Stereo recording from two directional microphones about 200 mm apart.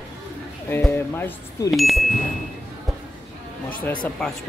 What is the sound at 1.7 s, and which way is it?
Speech, centre (ahead or behind).